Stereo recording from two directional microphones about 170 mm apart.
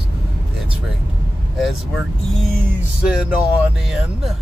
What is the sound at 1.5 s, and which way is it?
Speech, centre (ahead or behind).